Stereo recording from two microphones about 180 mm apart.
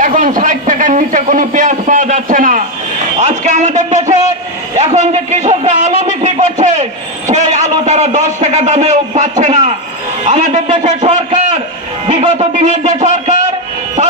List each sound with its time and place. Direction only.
0.0 s a sound: 50° right (ahead or behind)
10.2 s a man's voice: 45° right (ahead or behind)
10.9 s a man's voice: 25° right (ahead or behind)
12.1 s a man's voice: 40° right (ahead or behind)